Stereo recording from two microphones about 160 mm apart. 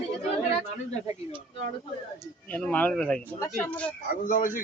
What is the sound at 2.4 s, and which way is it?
Speech, 10° left (ahead or behind).